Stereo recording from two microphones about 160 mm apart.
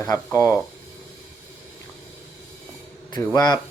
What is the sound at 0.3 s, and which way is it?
Speech, 20° left (ahead or behind).